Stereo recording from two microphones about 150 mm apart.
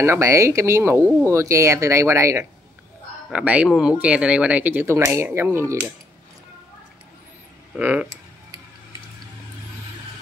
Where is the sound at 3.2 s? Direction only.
10° right (ahead or behind).